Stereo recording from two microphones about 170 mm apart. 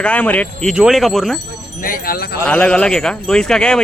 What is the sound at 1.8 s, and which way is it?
Speech, 60° left (ahead or behind).